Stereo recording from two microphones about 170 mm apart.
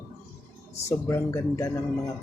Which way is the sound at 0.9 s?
15° left (ahead or behind).